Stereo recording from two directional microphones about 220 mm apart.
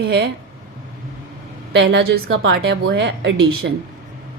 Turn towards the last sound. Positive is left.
turn(degrees=-60)  # may be behind; listen again after turning